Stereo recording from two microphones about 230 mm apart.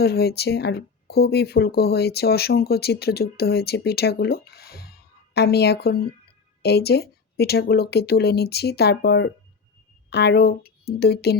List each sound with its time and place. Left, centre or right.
0.0 s speech: left